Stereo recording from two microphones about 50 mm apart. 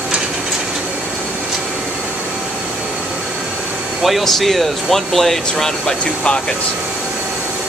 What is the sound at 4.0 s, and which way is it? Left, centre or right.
Speech, centre.